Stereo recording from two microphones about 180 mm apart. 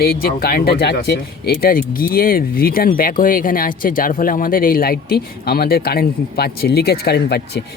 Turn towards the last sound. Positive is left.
turn(degrees=65)  # may be behind; listen again after turning